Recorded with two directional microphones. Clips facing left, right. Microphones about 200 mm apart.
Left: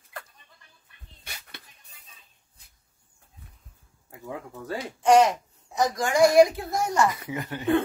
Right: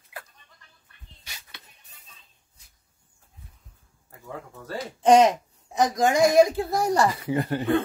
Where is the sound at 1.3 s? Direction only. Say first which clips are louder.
Left 3 dB; 55° left (ahead or behind).